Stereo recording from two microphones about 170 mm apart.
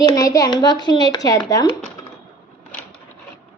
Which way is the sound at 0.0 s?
20° left (ahead or behind).